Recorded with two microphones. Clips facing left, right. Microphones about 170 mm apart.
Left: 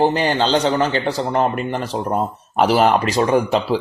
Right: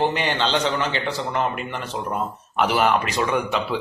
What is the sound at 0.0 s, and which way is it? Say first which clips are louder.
Speech: left 5 dB; 40° left (ahead or behind).